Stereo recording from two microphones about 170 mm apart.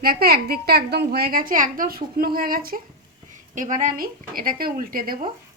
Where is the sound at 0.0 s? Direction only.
60° right (ahead or behind).